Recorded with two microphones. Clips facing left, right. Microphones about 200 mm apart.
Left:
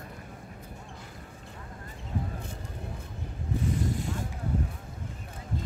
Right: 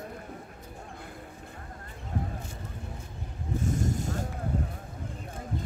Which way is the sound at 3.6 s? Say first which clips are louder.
Right 1 dB; 45° right (ahead or behind).